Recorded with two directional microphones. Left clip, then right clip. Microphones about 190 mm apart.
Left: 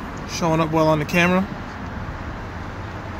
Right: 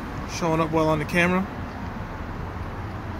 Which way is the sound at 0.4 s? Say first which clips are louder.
Left 3 dB; 35° left (ahead or behind).